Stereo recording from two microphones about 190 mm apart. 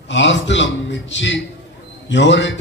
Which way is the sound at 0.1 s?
70° left (ahead or behind).